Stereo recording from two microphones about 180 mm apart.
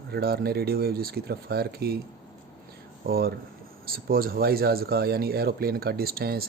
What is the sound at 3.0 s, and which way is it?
Speech, 55° right (ahead or behind).